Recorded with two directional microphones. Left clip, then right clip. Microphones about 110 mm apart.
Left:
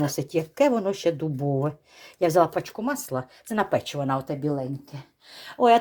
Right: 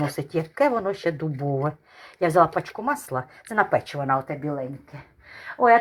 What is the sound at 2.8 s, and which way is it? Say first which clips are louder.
Speech: right 3 dB; 20° left (ahead or behind).